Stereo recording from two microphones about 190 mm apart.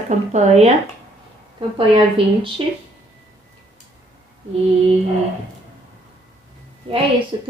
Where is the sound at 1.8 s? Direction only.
25° right (ahead or behind).